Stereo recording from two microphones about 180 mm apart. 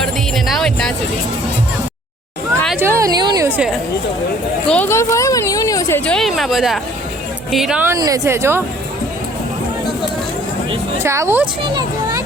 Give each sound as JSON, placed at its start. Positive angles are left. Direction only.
{"t": 0.0, "sound": "music", "side_deg": 0}
{"t": 2.7, "sound": "a woman's voice", "side_deg": -15}
{"t": 4.7, "sound": "speech", "side_deg": 10}
{"t": 6.1, "sound": "speech", "side_deg": 0}
{"t": 7.9, "sound": "a woman's voice", "side_deg": -20}
{"t": 11.0, "sound": "a woman's voice", "side_deg": -15}
{"t": 11.6, "sound": "speech", "side_deg": -25}